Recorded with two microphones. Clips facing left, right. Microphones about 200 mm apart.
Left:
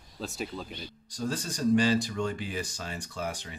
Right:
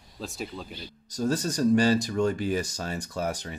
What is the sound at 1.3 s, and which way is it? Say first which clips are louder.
Speech: right 4 dB; 40° right (ahead or behind).